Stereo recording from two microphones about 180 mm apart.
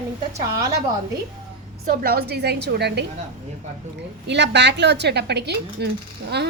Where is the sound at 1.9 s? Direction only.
60° right (ahead or behind).